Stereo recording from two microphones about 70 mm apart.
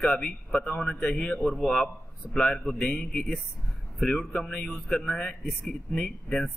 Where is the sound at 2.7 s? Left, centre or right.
Left.